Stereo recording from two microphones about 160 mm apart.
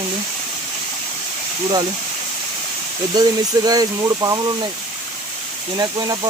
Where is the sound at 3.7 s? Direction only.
20° right (ahead or behind).